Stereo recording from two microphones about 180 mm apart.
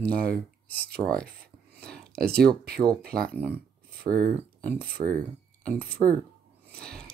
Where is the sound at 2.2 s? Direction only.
60° right (ahead or behind).